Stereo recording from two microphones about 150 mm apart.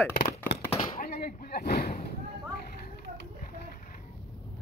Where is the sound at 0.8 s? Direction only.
70° left (ahead or behind).